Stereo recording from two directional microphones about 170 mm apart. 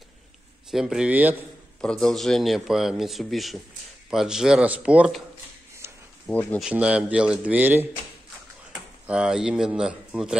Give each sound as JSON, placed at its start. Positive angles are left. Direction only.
{"t": 0.7, "sound": "speech", "side_deg": 0}
{"t": 1.8, "sound": "speech", "side_deg": 5}
{"t": 5.8, "sound": "a sound", "side_deg": -15}
{"t": 6.6, "sound": "speech", "side_deg": -5}
{"t": 9.0, "sound": "speech", "side_deg": -5}